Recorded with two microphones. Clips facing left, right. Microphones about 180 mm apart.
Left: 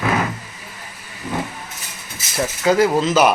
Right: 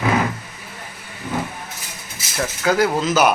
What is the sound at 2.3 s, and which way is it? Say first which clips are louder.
Speech: left 3 dB; centre (ahead or behind).